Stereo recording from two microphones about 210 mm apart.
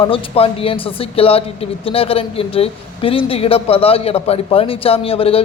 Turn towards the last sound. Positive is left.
turn(degrees=25)  # may be behind; listen again after turning